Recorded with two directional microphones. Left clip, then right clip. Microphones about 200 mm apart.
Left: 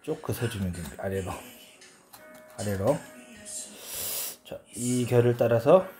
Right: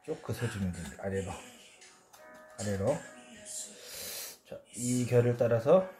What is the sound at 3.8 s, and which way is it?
Wheeze, 35° left (ahead or behind).